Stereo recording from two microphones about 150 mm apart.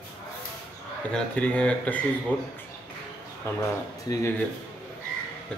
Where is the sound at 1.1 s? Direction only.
5° left (ahead or behind).